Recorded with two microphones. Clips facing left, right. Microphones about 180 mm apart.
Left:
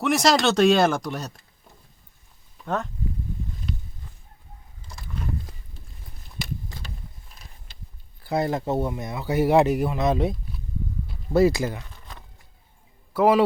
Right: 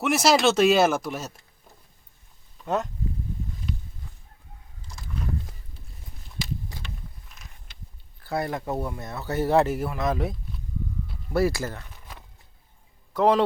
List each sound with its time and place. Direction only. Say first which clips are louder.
0.0 s speech: even; 5° right (ahead or behind)
6.8 s mechanisms: even; 35° left (ahead or behind)
8.2 s speech: left 4 dB; 20° left (ahead or behind)
9.0 s speech: left 4 dB; 15° left (ahead or behind)
13.1 s a man's voice: left 2 dB; 5° left (ahead or behind)